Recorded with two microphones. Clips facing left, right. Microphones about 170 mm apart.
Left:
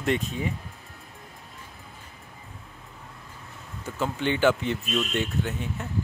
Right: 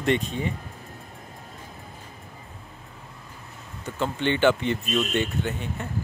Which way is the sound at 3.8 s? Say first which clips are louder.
Right 1 dB; 5° left (ahead or behind).